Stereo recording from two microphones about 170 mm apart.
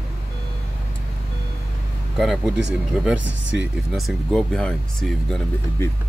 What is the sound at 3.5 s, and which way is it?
Speech, centre (ahead or behind).